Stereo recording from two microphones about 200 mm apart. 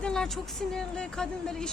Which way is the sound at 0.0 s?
5° left (ahead or behind).